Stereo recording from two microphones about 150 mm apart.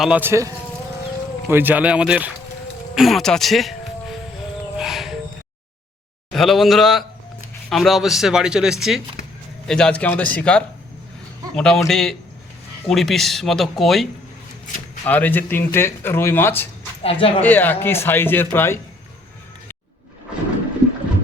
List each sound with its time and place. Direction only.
0.0 s speech: 10° right (ahead or behind)
4.8 s music: 5° right (ahead or behind)
6.3 s speech: centre (ahead or behind)
15.0 s speech: 10° left (ahead or behind)
17.0 s speech: 40° left (ahead or behind)
17.4 s speech: 10° left (ahead or behind)